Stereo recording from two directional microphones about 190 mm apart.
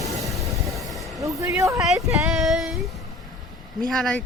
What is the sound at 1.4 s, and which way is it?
Speech, 15° right (ahead or behind).